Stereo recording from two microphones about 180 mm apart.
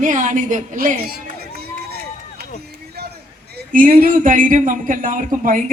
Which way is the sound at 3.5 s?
50° right (ahead or behind).